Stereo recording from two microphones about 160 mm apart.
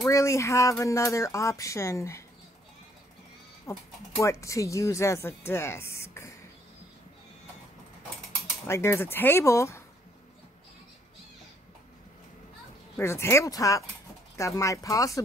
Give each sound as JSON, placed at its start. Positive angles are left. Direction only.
{"t": 0.0, "sound": "speech", "side_deg": 20}
{"t": 3.7, "sound": "speech", "side_deg": 15}
{"t": 8.6, "sound": "speech", "side_deg": 15}
{"t": 12.9, "sound": "speech", "side_deg": 15}